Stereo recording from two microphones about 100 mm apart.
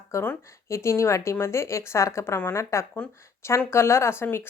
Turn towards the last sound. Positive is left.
turn(degrees=25)  # may be behind; listen again after turning